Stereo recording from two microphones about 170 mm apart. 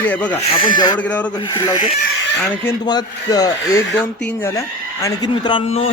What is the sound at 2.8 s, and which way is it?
A man's voice, 25° left (ahead or behind).